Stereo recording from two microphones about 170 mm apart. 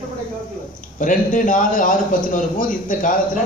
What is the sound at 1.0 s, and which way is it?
A man's voice, 50° left (ahead or behind).